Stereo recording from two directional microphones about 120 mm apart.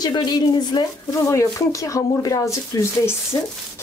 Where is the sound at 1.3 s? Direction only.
25° left (ahead or behind).